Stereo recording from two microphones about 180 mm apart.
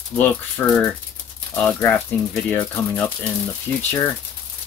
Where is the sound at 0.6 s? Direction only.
15° left (ahead or behind).